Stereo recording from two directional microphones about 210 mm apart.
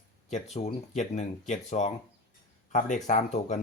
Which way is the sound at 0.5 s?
30° left (ahead or behind).